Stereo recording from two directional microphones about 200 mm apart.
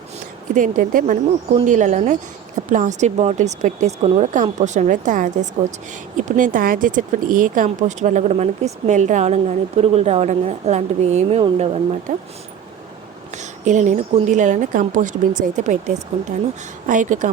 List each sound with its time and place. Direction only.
0.5 s speech: 40° right (ahead or behind)
13.3 s speech: 35° right (ahead or behind)
16.9 s speech: 40° right (ahead or behind)